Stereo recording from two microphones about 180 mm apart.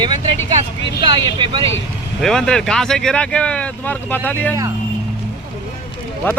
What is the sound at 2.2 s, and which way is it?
Speech, 5° left (ahead or behind).